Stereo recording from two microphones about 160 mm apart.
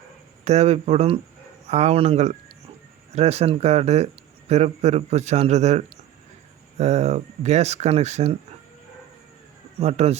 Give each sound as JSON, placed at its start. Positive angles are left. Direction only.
{"t": 0.4, "sound": "speech", "side_deg": -45}
{"t": 9.8, "sound": "speech", "side_deg": -40}